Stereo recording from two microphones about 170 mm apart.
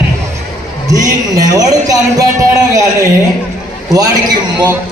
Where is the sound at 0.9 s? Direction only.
20° right (ahead or behind).